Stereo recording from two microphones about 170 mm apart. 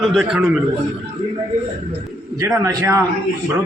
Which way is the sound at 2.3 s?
20° right (ahead or behind).